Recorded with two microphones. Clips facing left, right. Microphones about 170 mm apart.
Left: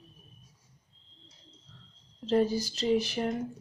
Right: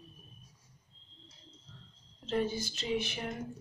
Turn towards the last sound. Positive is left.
turn(degrees=35)  # may be behind; listen again after turning